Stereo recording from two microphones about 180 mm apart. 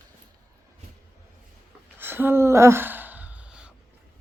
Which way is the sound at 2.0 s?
10° right (ahead or behind).